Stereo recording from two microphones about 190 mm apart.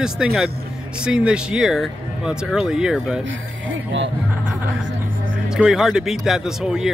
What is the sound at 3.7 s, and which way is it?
Speech, 75° right (ahead or behind).